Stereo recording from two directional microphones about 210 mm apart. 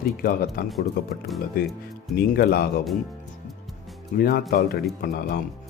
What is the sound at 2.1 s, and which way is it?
Speech, 45° left (ahead or behind).